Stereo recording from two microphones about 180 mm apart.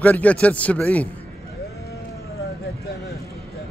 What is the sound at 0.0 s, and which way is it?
A man's voice, 10° left (ahead or behind).